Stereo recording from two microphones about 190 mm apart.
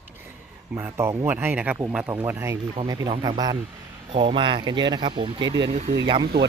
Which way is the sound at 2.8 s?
25° right (ahead or behind).